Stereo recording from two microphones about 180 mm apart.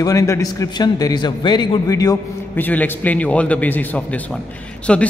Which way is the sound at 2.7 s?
10° left (ahead or behind).